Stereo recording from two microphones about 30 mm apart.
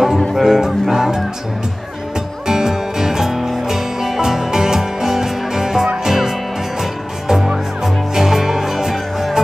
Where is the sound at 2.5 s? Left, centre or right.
Right.